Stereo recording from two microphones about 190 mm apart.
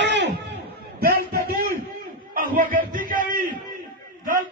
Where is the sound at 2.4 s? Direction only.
45° right (ahead or behind).